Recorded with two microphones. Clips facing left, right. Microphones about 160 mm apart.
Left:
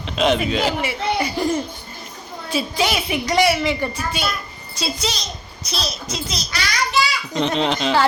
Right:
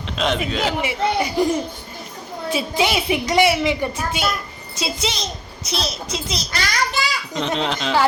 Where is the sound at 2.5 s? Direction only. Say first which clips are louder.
Right 1 dB; 20° right (ahead or behind).